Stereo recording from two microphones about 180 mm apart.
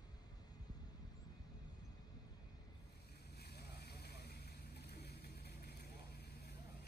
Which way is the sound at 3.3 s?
65° left (ahead or behind).